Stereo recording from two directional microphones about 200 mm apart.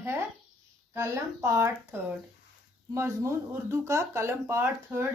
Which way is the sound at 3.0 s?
15° right (ahead or behind).